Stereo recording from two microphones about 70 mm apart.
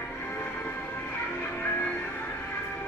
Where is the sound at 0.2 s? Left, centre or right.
Left.